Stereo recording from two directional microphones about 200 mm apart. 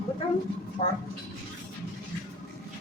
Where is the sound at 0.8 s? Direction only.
35° left (ahead or behind).